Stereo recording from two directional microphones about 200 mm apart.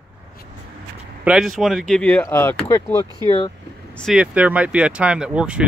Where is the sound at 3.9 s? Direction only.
Centre (ahead or behind).